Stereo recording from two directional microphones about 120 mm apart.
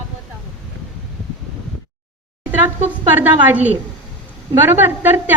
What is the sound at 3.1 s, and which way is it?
A woman's voice, 15° right (ahead or behind).